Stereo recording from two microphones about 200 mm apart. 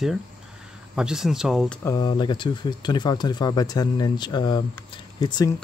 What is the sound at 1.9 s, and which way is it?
Speech, 20° left (ahead or behind).